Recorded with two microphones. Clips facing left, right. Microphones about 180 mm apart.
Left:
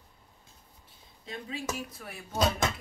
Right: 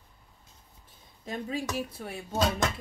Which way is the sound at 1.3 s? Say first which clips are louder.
Right 5 dB; 45° right (ahead or behind).